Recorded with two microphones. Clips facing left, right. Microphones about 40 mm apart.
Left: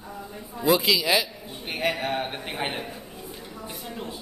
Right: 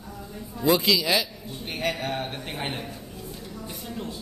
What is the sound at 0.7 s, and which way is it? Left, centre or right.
A man's voice, centre.